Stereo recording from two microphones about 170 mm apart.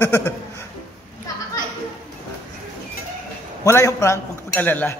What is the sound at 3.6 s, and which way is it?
A man's voice, 20° left (ahead or behind).